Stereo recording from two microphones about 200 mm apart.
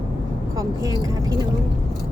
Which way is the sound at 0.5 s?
15° right (ahead or behind).